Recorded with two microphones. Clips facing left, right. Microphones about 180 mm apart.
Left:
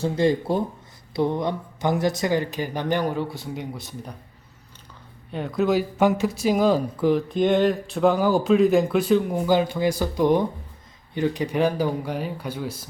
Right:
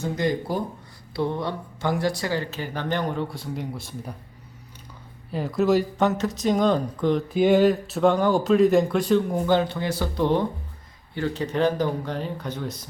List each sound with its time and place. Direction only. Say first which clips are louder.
0.0 s speech: left 4 dB; 30° left (ahead or behind); by 4.1 s centre (ahead or behind)
5.3 s speech: right 1 dB; centre (ahead or behind)
6.0 s speech: left 2 dB; 10° left (ahead or behind)
7.3 s speech: right 2 dB; 5° right (ahead or behind)